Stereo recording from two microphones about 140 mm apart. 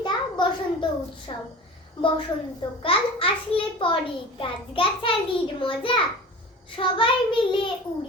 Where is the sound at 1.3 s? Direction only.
35° left (ahead or behind).